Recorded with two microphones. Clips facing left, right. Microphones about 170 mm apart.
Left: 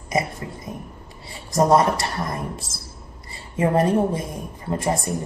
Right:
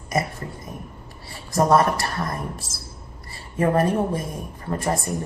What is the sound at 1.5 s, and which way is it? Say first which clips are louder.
Speech: left 1 dB; 20° left (ahead or behind).